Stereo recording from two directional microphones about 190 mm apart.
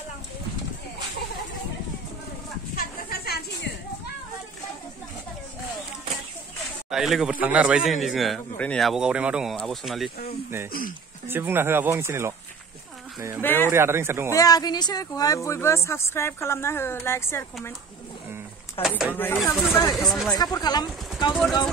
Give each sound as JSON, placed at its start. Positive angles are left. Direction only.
{"t": 2.7, "sound": "a sound", "side_deg": 55}
{"t": 6.9, "sound": "a man's voice", "side_deg": 0}
{"t": 10.7, "sound": "speech", "side_deg": 45}
{"t": 11.2, "sound": "speech", "side_deg": -10}
{"t": 13.4, "sound": "speech", "side_deg": 10}
{"t": 13.7, "sound": "speech", "side_deg": -15}
{"t": 14.3, "sound": "speech", "side_deg": 20}
{"t": 18.8, "sound": "a man's voice", "side_deg": -5}
{"t": 20.5, "sound": "speech", "side_deg": 20}